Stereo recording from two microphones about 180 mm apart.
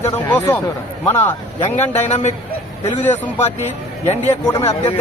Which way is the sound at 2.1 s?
35° left (ahead or behind).